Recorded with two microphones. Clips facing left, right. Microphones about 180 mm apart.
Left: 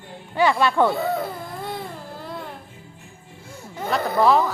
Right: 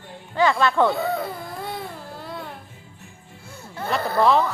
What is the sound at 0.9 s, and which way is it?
Baby cry, centre (ahead or behind).